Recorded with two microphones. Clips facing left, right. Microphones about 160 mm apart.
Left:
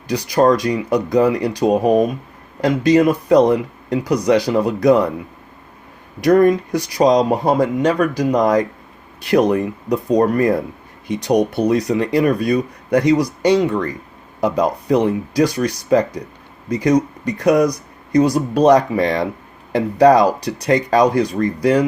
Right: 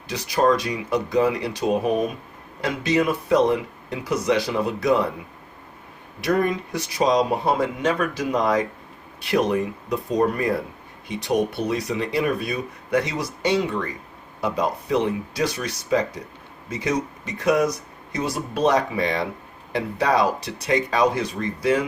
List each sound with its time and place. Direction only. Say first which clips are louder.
0.3 s speech: left 5 dB; 40° left (ahead or behind)
6.2 s speech: left 9 dB; 40° left (ahead or behind)